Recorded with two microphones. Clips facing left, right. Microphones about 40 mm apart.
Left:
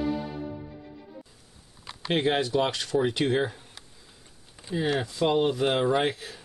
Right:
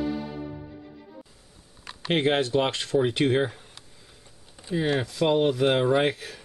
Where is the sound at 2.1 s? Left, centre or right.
Centre.